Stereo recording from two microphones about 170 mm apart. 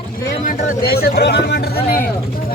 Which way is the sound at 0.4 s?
65° left (ahead or behind).